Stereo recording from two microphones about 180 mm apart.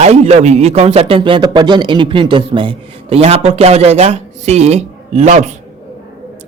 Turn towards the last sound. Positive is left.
turn(degrees=-40)  # may be behind; listen again after turning